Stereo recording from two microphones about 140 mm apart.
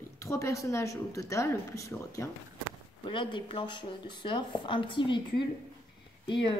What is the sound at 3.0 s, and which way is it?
Speech, 35° left (ahead or behind).